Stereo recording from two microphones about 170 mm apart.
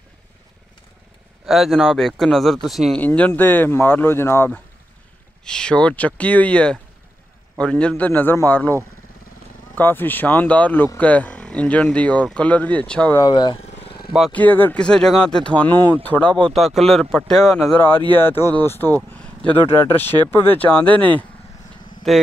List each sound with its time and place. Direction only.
1.4 s speech: centre (ahead or behind)
3.0 s speech: 10° left (ahead or behind)
9.8 s speech: 10° left (ahead or behind)
13.2 s vehicle: 25° left (ahead or behind)
14.1 s a man's voice: 5° left (ahead or behind)